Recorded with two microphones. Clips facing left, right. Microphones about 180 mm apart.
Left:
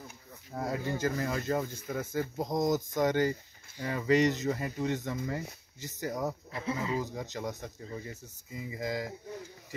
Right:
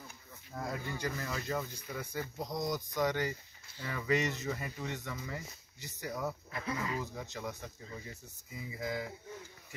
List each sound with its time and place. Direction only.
0.6 s speech: 40° left (ahead or behind)
6.5 s speech: 25° left (ahead or behind)
7.1 s speech: 40° left (ahead or behind)
8.7 s speech: 35° left (ahead or behind)